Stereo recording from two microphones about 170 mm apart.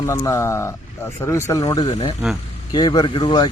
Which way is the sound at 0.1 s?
15° left (ahead or behind).